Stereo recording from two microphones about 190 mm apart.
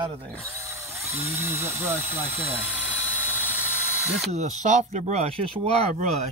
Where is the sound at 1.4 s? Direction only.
15° right (ahead or behind).